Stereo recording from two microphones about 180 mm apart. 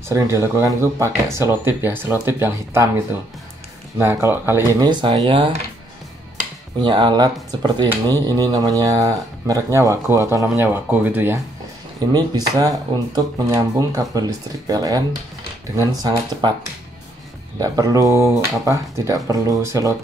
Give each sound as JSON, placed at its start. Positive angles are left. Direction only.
{"t": 0.1, "sound": "speech", "side_deg": -15}
{"t": 4.0, "sound": "speech", "side_deg": -15}
{"t": 4.8, "sound": "speech", "side_deg": -25}
{"t": 6.8, "sound": "speech", "side_deg": -25}
{"t": 12.1, "sound": "speech", "side_deg": -20}
{"t": 17.6, "sound": "speech", "side_deg": -20}